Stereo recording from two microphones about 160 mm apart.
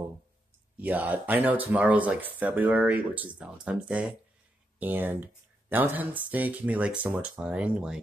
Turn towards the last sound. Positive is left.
turn(degrees=-5)  # may be behind; listen again after turning